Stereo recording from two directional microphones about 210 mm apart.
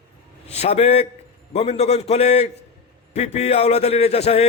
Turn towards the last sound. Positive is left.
turn(degrees=30)  # may be behind; listen again after turning